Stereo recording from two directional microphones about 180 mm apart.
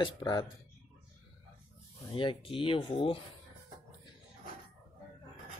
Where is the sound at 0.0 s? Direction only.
25° left (ahead or behind).